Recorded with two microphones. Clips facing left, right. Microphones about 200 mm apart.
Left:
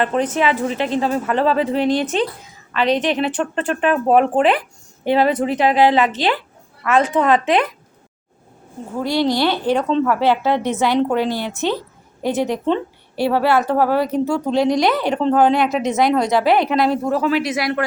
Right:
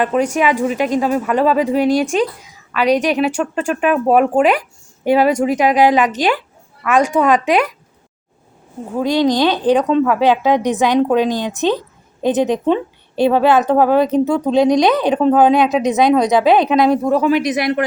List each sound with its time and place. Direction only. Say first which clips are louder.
0.0 s speech: right 2 dB; 10° right (ahead or behind)
9.0 s a woman's voice: right 4 dB; 15° right (ahead or behind)